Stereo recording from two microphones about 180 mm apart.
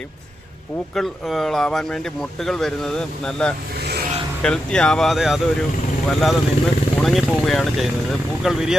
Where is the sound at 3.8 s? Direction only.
65° right (ahead or behind).